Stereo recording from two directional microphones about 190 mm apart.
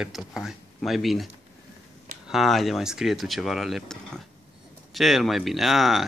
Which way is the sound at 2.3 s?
Centre (ahead or behind).